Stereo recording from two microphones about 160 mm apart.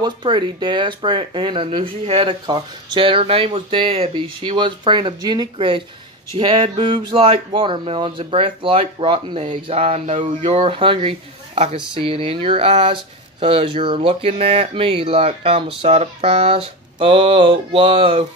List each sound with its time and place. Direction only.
0.0 s speech: 30° right (ahead or behind)